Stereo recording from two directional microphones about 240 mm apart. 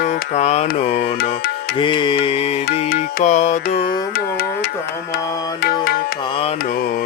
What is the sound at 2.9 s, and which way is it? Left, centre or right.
Music, left.